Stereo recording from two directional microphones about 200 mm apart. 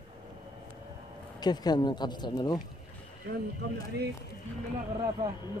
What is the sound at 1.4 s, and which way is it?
Speech, 20° left (ahead or behind).